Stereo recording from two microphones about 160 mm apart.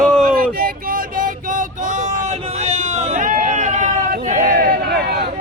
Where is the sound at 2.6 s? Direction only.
45° right (ahead or behind); by 5.2 s 80° right.